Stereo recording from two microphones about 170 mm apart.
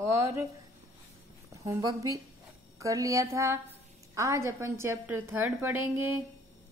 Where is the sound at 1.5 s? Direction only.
20° right (ahead or behind).